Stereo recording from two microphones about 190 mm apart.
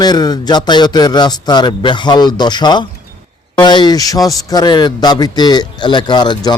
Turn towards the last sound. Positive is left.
turn(degrees=25)  # may be behind; listen again after turning